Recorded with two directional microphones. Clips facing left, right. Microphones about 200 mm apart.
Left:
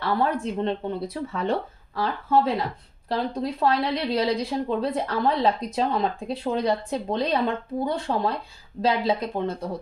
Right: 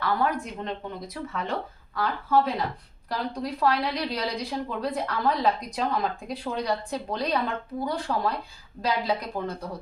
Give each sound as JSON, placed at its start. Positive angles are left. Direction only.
{"t": 0.0, "sound": "speech", "side_deg": 30}